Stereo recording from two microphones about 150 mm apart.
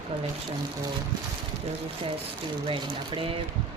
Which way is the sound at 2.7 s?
35° right (ahead or behind).